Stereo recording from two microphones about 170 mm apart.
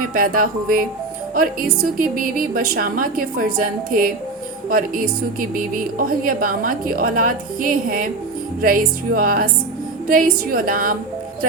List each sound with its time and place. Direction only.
0.0 s a woman's voice: 55° right (ahead or behind)
2.0 s a woman's voice: 55° right (ahead or behind)